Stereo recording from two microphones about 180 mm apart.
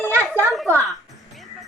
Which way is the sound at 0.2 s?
10° left (ahead or behind).